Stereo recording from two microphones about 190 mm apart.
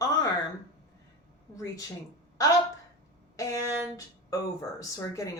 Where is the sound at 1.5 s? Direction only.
15° left (ahead or behind).